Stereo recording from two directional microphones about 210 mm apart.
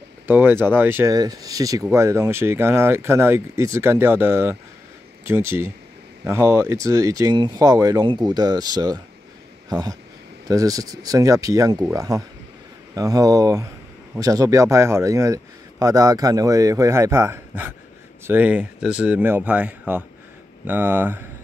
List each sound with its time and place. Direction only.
0.3 s speech: 10° right (ahead or behind)